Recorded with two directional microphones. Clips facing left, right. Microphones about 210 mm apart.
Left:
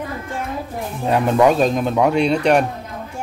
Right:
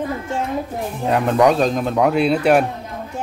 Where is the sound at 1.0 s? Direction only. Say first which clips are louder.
Left 1 dB; centre (ahead or behind).